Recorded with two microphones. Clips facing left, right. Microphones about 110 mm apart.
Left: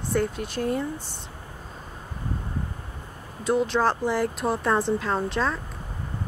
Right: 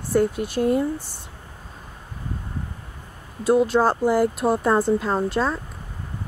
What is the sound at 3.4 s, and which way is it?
Speech, 5° right (ahead or behind).